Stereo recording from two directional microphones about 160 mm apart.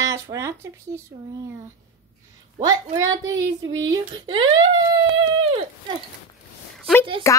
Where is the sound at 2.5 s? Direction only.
20° right (ahead or behind).